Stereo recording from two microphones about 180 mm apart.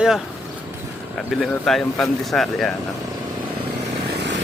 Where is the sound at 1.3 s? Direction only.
Centre (ahead or behind).